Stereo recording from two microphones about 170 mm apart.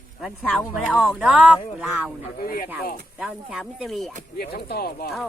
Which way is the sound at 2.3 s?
60° left (ahead or behind).